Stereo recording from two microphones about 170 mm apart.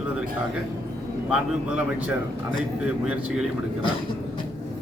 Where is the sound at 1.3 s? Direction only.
5° right (ahead or behind).